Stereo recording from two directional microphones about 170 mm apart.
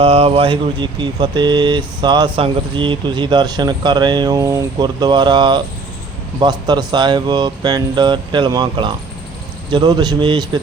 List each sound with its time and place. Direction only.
0.0 s speech: 35° right (ahead or behind)